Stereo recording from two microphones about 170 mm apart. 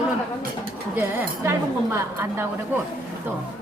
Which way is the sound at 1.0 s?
15° right (ahead or behind).